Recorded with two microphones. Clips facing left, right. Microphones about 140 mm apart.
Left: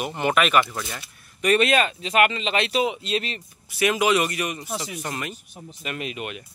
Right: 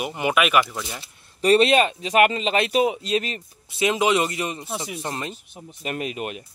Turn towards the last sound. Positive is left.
turn(degrees=-35)  # may be behind; listen again after turning